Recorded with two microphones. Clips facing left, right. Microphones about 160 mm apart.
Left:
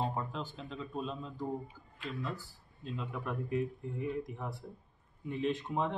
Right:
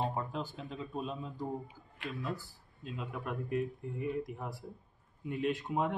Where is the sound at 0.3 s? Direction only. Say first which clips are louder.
Right 2 dB; 5° right (ahead or behind).